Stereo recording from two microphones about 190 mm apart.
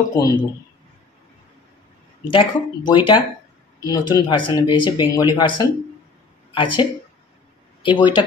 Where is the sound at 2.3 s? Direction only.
25° left (ahead or behind).